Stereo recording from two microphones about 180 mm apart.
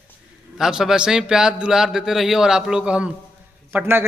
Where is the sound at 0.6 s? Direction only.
5° right (ahead or behind).